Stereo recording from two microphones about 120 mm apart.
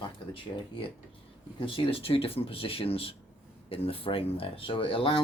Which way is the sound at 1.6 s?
45° left (ahead or behind).